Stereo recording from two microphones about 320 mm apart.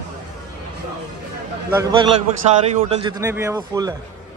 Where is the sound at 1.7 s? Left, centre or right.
Centre.